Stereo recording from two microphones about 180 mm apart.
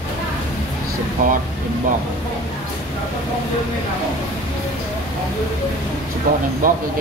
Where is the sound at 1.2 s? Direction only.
50° right (ahead or behind).